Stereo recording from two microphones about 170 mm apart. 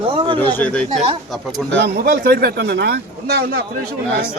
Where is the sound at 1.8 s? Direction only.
65° right (ahead or behind).